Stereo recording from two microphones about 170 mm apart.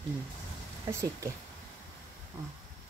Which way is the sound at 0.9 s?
15° right (ahead or behind).